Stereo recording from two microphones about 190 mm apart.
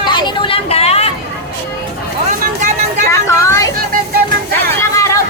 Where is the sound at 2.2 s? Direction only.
40° right (ahead or behind).